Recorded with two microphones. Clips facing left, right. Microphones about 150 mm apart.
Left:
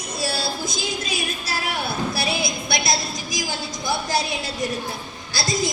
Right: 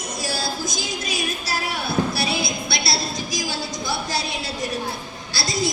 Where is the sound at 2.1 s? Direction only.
20° left (ahead or behind).